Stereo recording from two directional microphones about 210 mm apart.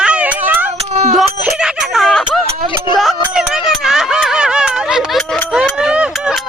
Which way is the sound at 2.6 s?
25° left (ahead or behind).